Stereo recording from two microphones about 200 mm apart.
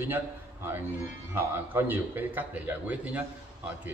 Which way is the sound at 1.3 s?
10° right (ahead or behind).